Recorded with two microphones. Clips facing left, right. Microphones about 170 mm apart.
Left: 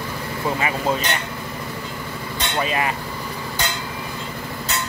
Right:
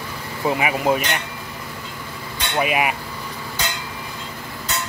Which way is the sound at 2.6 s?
15° right (ahead or behind).